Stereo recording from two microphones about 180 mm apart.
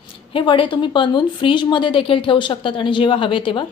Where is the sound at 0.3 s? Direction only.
30° left (ahead or behind).